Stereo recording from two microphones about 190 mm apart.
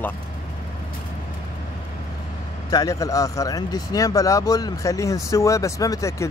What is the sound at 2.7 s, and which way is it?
Speech, 15° left (ahead or behind).